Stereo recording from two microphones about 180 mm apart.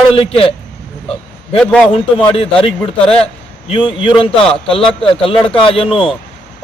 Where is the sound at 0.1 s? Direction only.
30° left (ahead or behind).